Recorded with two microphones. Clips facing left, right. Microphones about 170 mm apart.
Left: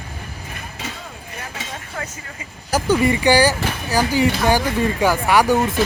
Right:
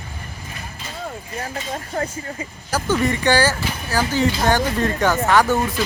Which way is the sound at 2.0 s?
35° right (ahead or behind).